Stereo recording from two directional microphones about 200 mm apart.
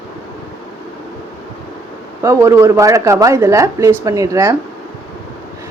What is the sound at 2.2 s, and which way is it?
Speech, 15° right (ahead or behind).